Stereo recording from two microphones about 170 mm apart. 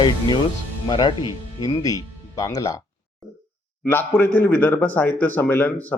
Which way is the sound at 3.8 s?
10° left (ahead or behind).